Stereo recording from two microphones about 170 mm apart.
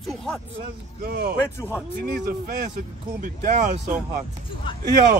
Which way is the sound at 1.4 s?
15° left (ahead or behind).